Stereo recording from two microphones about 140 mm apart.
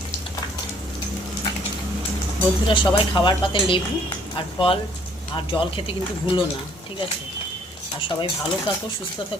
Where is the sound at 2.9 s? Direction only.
35° left (ahead or behind).